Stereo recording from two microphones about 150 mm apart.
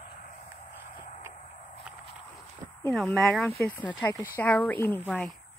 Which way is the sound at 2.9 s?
Centre (ahead or behind).